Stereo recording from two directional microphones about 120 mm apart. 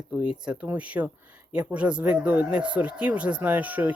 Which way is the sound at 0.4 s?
10° right (ahead or behind).